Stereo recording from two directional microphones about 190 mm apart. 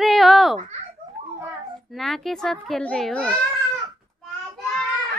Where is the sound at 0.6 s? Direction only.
35° right (ahead or behind).